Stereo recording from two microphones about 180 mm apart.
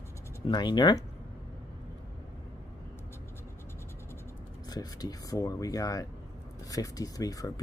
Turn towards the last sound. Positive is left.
turn(degrees=20)  # may be behind; listen again after turning